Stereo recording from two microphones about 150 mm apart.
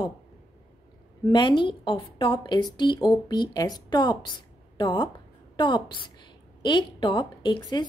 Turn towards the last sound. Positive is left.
turn(degrees=30)  # may be behind; listen again after turning